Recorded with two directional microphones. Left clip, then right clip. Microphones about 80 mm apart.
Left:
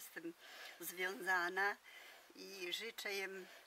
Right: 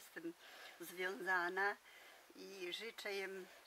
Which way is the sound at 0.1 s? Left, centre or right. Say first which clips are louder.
Even; left.